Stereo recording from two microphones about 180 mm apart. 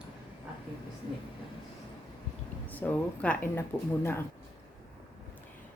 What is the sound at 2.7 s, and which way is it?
Speech, 10° left (ahead or behind).